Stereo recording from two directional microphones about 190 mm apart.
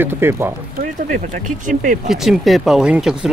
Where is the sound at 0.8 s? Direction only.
45° right (ahead or behind).